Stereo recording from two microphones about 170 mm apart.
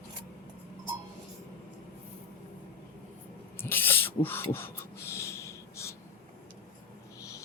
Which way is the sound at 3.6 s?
10° left (ahead or behind).